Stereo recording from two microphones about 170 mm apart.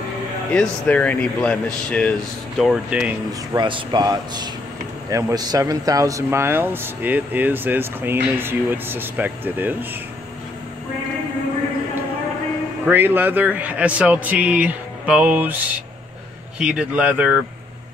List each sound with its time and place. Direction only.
0.5 s speech: 10° left (ahead or behind)
2.6 s speech: 5° right (ahead or behind)
3.5 s speech: 25° right (ahead or behind); by 9.8 s 10° right (ahead or behind)
12.8 s speech: 10° right (ahead or behind)